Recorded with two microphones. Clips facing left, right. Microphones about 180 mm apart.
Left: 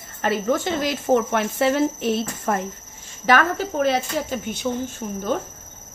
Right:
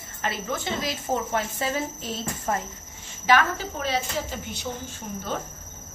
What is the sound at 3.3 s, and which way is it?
Speech, 55° left (ahead or behind).